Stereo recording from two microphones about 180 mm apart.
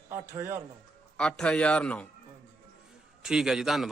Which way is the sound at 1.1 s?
5° left (ahead or behind).